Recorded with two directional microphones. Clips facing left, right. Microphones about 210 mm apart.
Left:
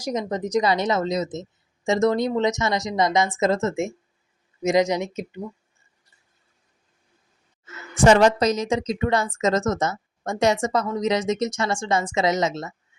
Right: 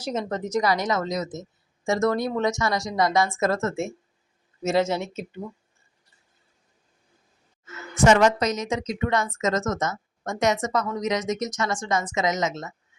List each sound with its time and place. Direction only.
0.0 s a woman's voice: 15° left (ahead or behind)
7.9 s a woman's voice: 30° left (ahead or behind)